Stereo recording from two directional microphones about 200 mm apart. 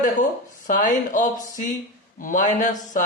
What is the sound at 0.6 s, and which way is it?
Speech, 40° left (ahead or behind).